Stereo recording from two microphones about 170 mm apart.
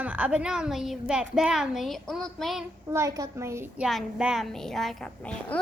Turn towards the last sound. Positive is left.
turn(degrees=5)  # may be behind; listen again after turning